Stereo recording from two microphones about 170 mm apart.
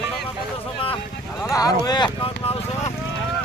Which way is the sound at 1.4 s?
20° left (ahead or behind).